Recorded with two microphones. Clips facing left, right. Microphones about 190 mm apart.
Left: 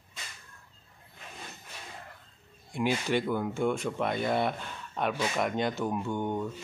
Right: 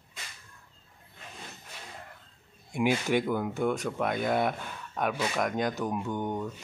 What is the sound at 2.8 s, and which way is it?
Speech, 10° right (ahead or behind).